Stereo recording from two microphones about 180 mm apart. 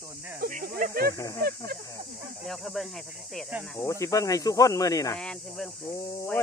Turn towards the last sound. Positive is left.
turn(degrees=15)  # may be behind; listen again after turning